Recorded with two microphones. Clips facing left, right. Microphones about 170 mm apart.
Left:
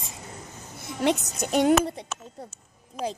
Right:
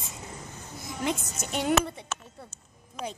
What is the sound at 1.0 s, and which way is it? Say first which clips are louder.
Speech: left 7 dB; 75° left (ahead or behind).